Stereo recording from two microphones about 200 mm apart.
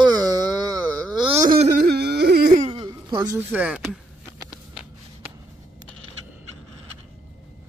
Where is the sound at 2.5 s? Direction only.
35° right (ahead or behind).